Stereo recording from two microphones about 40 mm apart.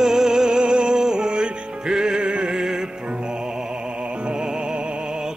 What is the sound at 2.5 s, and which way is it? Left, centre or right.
Music, centre.